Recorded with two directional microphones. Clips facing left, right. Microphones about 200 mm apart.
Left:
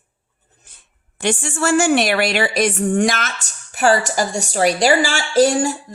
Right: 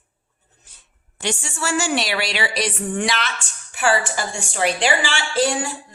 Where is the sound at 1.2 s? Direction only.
55° left (ahead or behind).